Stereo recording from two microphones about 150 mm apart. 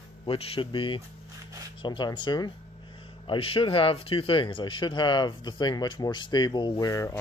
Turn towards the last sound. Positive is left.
turn(degrees=20)  # may be behind; listen again after turning